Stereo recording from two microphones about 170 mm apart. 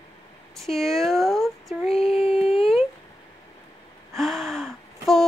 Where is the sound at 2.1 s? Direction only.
35° left (ahead or behind).